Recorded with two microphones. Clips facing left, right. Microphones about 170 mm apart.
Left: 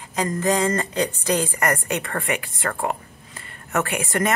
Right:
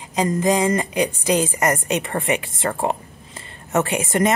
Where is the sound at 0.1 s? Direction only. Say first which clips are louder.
Right 3 dB; 15° right (ahead or behind).